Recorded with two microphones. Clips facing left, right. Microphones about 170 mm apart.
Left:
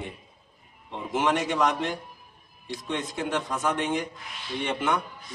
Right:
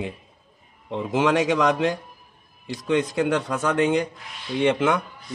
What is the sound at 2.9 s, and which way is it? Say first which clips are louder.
A man's voice: right 8 dB; 90° right.